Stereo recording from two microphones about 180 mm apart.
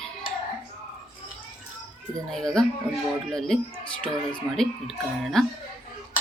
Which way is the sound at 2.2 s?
5° left (ahead or behind).